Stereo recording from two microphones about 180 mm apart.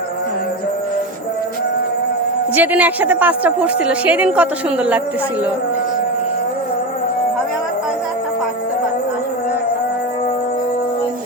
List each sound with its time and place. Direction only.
2.6 s a woman's voice: 10° right (ahead or behind)